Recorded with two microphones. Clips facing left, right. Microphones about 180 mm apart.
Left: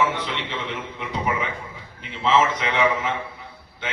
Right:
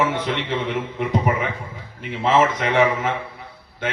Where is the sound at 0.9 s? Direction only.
45° right (ahead or behind).